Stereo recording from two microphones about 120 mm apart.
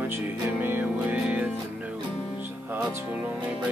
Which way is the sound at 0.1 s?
15° right (ahead or behind).